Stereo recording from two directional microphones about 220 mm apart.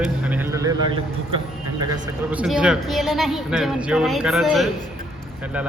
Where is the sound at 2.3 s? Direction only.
5° right (ahead or behind).